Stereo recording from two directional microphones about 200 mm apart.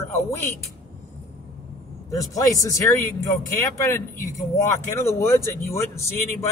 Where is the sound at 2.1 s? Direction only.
15° left (ahead or behind).